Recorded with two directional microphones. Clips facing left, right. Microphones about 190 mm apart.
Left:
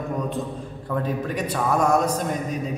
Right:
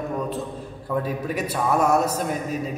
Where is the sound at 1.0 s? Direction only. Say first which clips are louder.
Left 1 dB; 5° right (ahead or behind).